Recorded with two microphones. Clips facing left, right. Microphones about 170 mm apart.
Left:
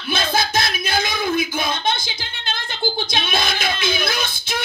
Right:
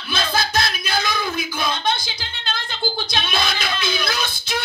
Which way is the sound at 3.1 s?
50° left (ahead or behind).